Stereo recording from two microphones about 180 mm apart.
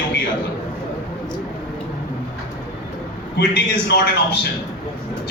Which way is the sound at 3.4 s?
70° left (ahead or behind).